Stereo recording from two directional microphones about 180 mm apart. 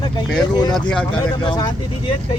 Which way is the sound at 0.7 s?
5° left (ahead or behind).